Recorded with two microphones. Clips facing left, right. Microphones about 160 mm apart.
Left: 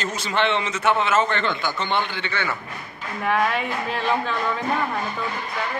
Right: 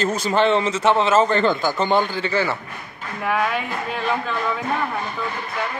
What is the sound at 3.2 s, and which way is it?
Speech, centre (ahead or behind).